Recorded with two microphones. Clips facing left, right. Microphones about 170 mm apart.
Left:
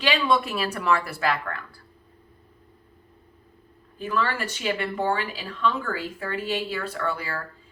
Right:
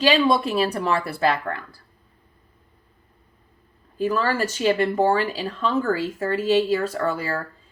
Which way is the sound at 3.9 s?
40° right (ahead or behind).